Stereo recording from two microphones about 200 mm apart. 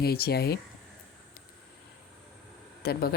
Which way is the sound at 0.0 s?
50° left (ahead or behind).